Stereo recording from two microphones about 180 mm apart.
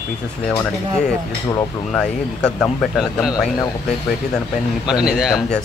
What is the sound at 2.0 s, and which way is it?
Speech, 5° left (ahead or behind).